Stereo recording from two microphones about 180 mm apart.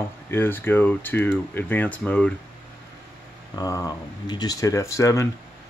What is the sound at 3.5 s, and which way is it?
Speech, 20° left (ahead or behind).